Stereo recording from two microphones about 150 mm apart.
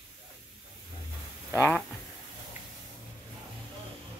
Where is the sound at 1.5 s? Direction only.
15° left (ahead or behind).